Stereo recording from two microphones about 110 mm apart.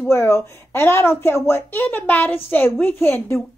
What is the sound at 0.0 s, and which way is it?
A woman's voice, 25° left (ahead or behind).